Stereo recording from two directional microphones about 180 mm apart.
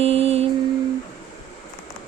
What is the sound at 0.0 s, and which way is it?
Mantra, 35° right (ahead or behind).